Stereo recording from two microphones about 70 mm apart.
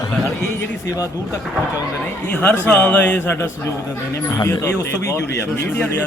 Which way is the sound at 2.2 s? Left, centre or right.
Left.